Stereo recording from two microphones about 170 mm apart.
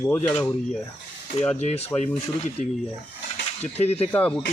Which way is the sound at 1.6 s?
40° left (ahead or behind).